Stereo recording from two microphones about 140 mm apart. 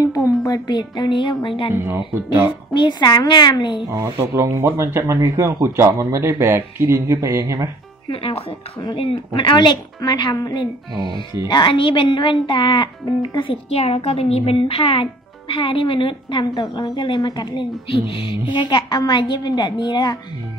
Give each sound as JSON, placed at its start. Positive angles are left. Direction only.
{"t": 0.1, "sound": "speech", "side_deg": 25}
{"t": 2.7, "sound": "speech", "side_deg": 35}
{"t": 3.9, "sound": "speech", "side_deg": -20}
{"t": 8.1, "sound": "speech", "side_deg": 40}